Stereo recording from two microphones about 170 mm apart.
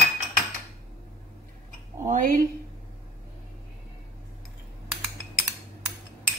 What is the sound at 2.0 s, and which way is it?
Speech, 50° right (ahead or behind).